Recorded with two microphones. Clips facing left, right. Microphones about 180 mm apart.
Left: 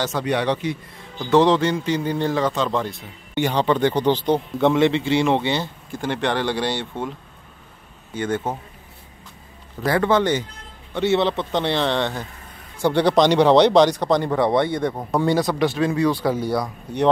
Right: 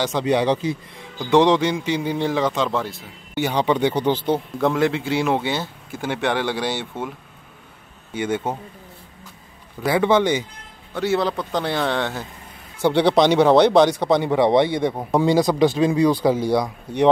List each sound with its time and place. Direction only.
0.2 s speech: 25° right (ahead or behind)
1.2 s speech: 15° right (ahead or behind)
9.8 s speech: 10° right (ahead or behind)
11.0 s speech: centre (ahead or behind)